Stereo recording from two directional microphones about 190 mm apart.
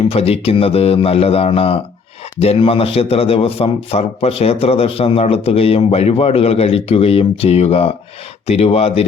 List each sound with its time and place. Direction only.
0.1 s a man's voice: 30° left (ahead or behind)